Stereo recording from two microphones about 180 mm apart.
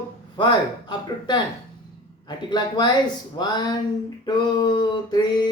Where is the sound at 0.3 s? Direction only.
25° left (ahead or behind).